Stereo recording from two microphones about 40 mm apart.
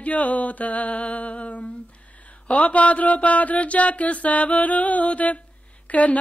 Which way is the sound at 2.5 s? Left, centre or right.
Left.